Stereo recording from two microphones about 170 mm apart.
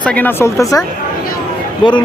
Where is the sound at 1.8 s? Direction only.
25° left (ahead or behind).